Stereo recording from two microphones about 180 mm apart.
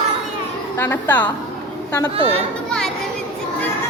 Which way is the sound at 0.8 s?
10° left (ahead or behind).